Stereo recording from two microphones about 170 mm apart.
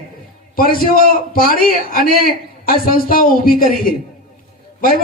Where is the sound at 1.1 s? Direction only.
60° left (ahead or behind).